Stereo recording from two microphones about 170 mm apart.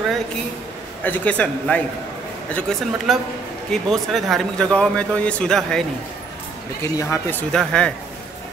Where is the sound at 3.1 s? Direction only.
Centre (ahead or behind).